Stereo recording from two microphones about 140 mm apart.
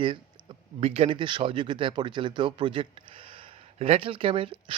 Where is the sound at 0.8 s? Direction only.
45° right (ahead or behind).